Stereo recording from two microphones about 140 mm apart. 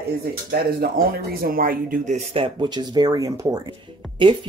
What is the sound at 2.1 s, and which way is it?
Speech, 40° right (ahead or behind).